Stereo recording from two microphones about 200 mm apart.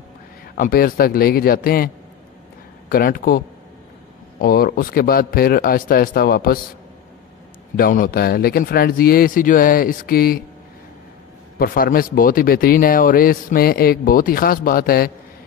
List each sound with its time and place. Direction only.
0.6 s speech: 45° left (ahead or behind)
2.9 s speech: 45° left (ahead or behind)
7.7 s speech: 45° left (ahead or behind)
11.5 s speech: 45° left (ahead or behind)